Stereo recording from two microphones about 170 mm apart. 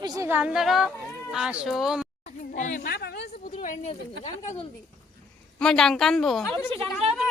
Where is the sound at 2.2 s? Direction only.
45° left (ahead or behind).